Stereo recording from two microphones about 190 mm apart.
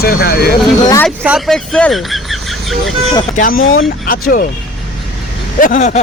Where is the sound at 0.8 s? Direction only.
20° left (ahead or behind).